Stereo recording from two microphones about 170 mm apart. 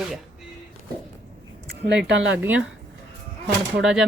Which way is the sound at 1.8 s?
90° right.